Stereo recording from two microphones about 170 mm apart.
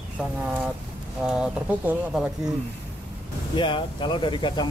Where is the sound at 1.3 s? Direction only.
5° right (ahead or behind).